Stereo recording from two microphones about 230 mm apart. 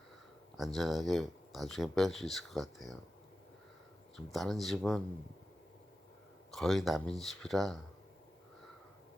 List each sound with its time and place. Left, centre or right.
0.5 s speech: centre
4.3 s speech: centre
6.5 s speech: centre